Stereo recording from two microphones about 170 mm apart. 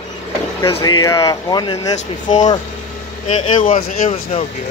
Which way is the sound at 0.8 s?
20° left (ahead or behind).